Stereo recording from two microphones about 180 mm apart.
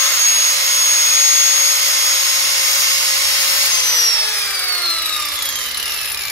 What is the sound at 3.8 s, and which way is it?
Tools, 20° left (ahead or behind).